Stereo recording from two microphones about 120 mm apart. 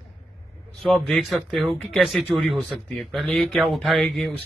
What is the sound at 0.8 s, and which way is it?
Speech, 5° left (ahead or behind).